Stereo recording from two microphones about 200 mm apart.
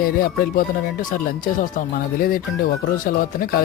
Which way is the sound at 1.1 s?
45° left (ahead or behind).